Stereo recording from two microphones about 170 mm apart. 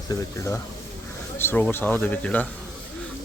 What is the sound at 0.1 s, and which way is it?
Speech, 15° left (ahead or behind).